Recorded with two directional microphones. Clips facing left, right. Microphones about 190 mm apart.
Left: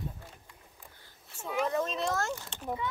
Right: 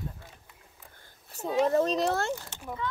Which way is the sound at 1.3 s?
40° right (ahead or behind).